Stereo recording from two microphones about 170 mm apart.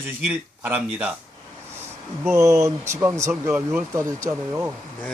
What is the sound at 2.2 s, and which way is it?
Speech, 15° right (ahead or behind).